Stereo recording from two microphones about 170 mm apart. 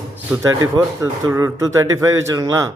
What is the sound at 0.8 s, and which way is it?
Speech, 15° right (ahead or behind).